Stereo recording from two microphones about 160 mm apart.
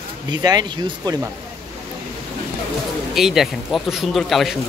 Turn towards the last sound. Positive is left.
turn(degrees=0)  # may be behind; listen again after turning